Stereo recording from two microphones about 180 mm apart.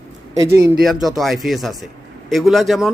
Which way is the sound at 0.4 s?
15° right (ahead or behind).